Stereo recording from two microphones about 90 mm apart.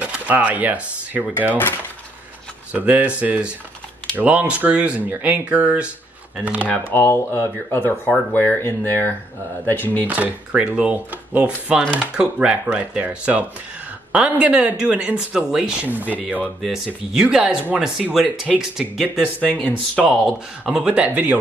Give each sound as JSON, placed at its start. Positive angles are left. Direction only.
{"t": 0.0, "sound": "speech", "side_deg": -15}
{"t": 2.7, "sound": "speech", "side_deg": -15}
{"t": 6.9, "sound": "speech", "side_deg": 30}
{"t": 10.0, "sound": "speech", "side_deg": -15}
{"t": 16.6, "sound": "speech", "side_deg": -5}
{"t": 19.4, "sound": "speech", "side_deg": 15}
{"t": 20.1, "sound": "speech", "side_deg": -5}